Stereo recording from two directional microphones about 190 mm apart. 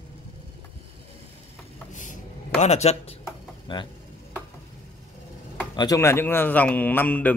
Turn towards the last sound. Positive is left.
turn(degrees=10)  # may be behind; listen again after turning